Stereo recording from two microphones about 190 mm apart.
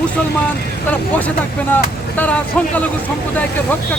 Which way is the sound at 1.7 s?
10° left (ahead or behind).